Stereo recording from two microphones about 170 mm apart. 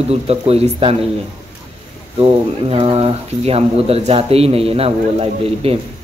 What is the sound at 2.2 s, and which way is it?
Speech, 35° right (ahead or behind).